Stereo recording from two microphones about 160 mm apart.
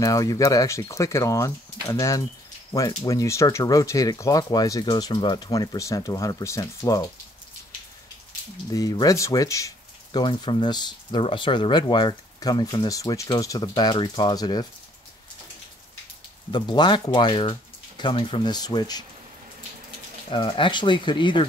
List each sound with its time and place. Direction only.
0.0 s speech: 20° left (ahead or behind)
8.7 s speech: 25° left (ahead or behind)
16.5 s speech: 25° left (ahead or behind)
20.2 s speech: 30° left (ahead or behind)